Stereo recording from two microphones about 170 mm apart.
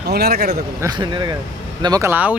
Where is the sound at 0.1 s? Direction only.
70° right (ahead or behind).